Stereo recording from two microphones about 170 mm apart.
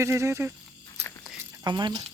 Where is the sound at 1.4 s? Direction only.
20° right (ahead or behind).